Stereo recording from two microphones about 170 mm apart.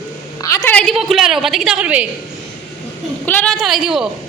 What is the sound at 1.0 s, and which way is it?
A woman's voice, centre (ahead or behind).